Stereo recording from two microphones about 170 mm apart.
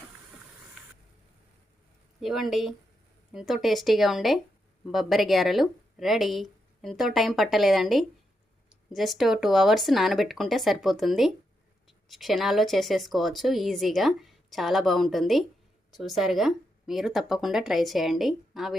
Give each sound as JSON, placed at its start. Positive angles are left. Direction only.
{"t": 2.2, "sound": "speech", "side_deg": 0}